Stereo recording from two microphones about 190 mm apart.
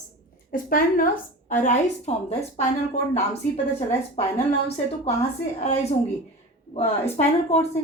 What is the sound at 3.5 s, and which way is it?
Speech, 35° left (ahead or behind).